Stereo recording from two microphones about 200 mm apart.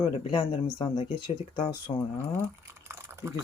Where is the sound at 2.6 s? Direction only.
15° right (ahead or behind).